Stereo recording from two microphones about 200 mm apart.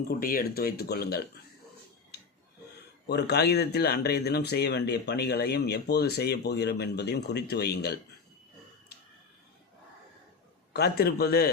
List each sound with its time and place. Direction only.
0.1 s speech: 45° left (ahead or behind)
3.1 s speech: 55° left (ahead or behind)
10.7 s speech: 55° left (ahead or behind)